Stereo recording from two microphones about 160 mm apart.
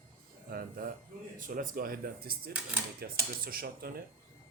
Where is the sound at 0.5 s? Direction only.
65° right (ahead or behind).